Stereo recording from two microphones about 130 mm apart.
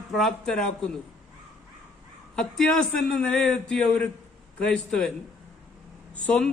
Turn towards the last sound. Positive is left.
turn(degrees=5)  # may be behind; listen again after turning